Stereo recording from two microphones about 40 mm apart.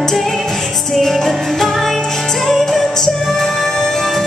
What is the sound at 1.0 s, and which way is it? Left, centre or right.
Music, centre.